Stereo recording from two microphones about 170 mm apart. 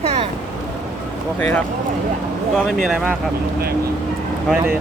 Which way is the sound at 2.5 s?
Centre (ahead or behind).